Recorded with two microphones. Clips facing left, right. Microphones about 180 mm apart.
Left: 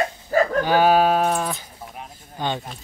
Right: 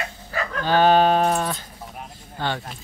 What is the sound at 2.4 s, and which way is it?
Speech, 15° left (ahead or behind).